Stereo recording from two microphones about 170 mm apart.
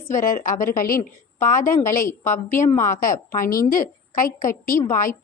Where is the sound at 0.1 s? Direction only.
50° left (ahead or behind).